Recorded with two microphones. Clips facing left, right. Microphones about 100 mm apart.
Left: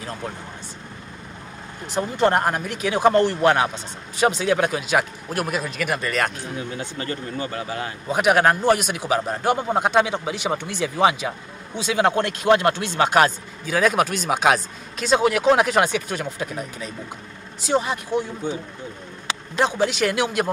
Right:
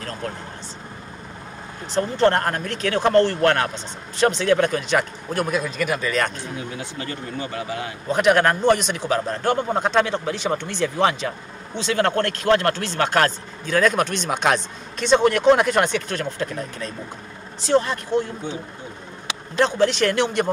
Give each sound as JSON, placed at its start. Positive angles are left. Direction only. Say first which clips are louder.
{"t": 1.9, "sound": "a man's voice", "louder": "right 1 dB", "side_deg": 15}
{"t": 7.0, "sound": "speech", "louder": "left 2 dB", "side_deg": 40}
{"t": 8.1, "sound": "a man's voice", "louder": "even", "side_deg": 10}
{"t": 19.6, "sound": "a man's voice", "louder": "right 2 dB", "side_deg": 10}